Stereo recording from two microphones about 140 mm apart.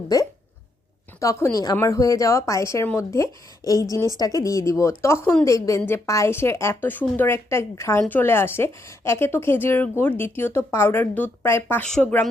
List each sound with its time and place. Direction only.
1.2 s a woman's voice: 20° left (ahead or behind)
11.9 s speech: 5° left (ahead or behind)